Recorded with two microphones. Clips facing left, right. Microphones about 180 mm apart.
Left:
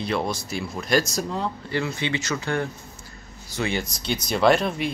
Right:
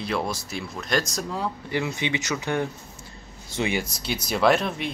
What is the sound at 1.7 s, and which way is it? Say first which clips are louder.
Speech: even; 15° right (ahead or behind).